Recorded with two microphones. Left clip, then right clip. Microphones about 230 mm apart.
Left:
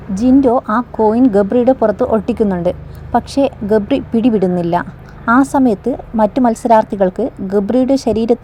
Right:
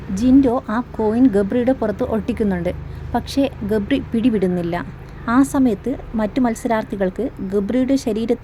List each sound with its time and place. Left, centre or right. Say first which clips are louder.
0.2 s a woman's voice: left 4 dB; centre